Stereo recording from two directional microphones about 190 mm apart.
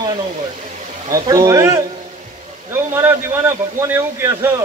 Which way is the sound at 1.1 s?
15° right (ahead or behind).